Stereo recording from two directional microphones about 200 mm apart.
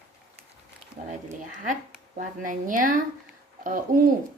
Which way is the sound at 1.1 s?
40° right (ahead or behind).